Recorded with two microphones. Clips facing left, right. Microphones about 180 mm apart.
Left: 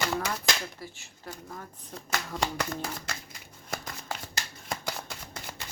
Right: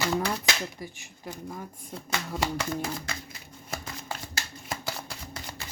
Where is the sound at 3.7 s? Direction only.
5° right (ahead or behind).